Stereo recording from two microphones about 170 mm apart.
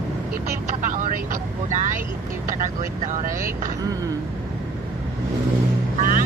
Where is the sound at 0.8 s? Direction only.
50° right (ahead or behind).